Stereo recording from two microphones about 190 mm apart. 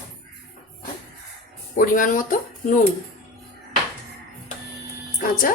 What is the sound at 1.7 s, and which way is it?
Speech, 45° left (ahead or behind).